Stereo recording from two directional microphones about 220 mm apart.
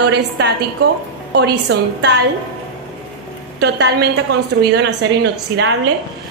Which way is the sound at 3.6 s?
50° right (ahead or behind).